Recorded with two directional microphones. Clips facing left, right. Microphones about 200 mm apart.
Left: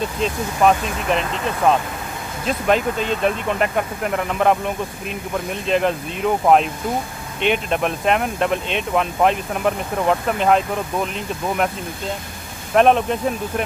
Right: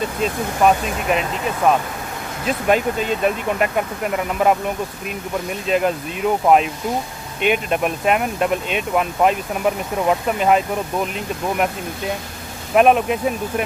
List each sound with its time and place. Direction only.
0.2 s speech: 5° right (ahead or behind)
5.7 s speech: 5° right (ahead or behind)
12.7 s speech: 5° right (ahead or behind)